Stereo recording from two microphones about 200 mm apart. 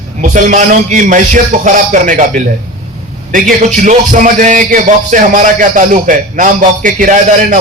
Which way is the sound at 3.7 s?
40° right (ahead or behind).